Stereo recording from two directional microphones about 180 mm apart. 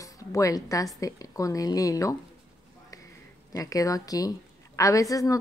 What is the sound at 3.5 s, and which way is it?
A woman's voice, 20° left (ahead or behind).